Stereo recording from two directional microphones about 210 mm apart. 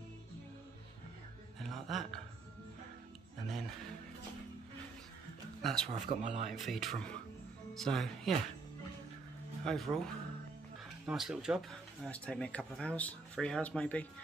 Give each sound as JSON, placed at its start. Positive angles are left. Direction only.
{"t": 1.6, "sound": "a sound", "side_deg": 0}
{"t": 5.6, "sound": "speech", "side_deg": 0}
{"t": 6.0, "sound": "speech", "side_deg": -30}
{"t": 6.5, "sound": "speech", "side_deg": 0}
{"t": 9.7, "sound": "speech", "side_deg": 0}